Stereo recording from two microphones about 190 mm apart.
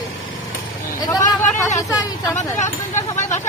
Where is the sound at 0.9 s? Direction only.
20° left (ahead or behind).